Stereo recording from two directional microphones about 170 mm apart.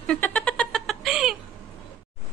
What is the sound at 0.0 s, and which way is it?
Cat, 5° left (ahead or behind).